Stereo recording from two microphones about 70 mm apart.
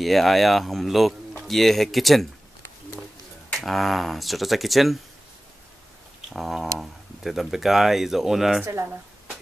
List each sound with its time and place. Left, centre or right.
0.0 s speech: centre
3.5 s speech: centre
6.3 s speech: centre
8.6 s speech: right